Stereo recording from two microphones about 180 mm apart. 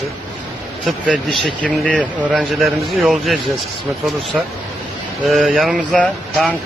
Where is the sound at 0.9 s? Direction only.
Centre (ahead or behind).